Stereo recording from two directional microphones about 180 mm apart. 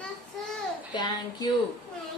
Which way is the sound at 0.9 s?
25° left (ahead or behind).